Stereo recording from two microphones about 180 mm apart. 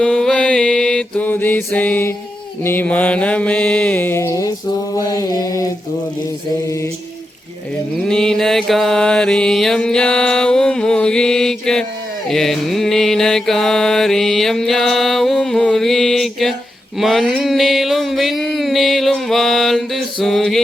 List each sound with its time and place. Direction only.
0.0 s mantra: 5° left (ahead or behind)
8.0 s mantra: 5° left (ahead or behind)
17.0 s a sound: centre (ahead or behind)